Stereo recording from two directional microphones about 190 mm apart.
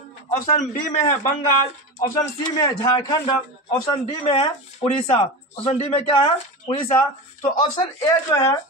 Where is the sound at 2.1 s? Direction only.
20° left (ahead or behind).